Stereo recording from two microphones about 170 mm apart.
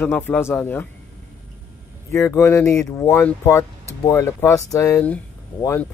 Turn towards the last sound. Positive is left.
turn(degrees=15)  # may be behind; listen again after turning